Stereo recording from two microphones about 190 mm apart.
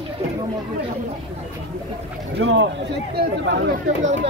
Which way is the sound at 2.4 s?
75° right (ahead or behind).